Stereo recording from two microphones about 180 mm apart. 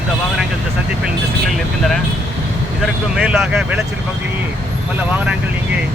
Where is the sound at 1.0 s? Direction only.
Centre (ahead or behind).